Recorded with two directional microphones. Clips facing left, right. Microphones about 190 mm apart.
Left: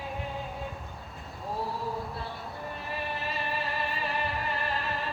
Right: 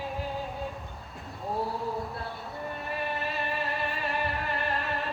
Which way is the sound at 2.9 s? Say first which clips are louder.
Right 2 dB; centre (ahead or behind).